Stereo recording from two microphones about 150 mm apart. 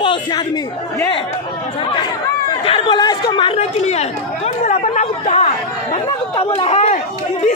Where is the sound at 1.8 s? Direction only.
30° left (ahead or behind).